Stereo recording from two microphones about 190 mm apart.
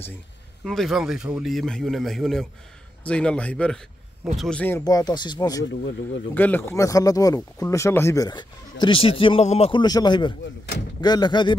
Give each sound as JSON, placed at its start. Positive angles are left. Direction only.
{"t": 0.7, "sound": "speech", "side_deg": 0}